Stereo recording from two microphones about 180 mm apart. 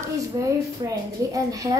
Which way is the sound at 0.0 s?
15° right (ahead or behind).